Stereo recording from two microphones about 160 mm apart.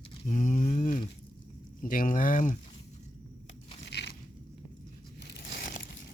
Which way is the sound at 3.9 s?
90° left.